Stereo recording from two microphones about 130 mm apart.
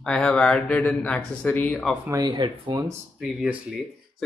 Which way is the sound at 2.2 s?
40° right (ahead or behind).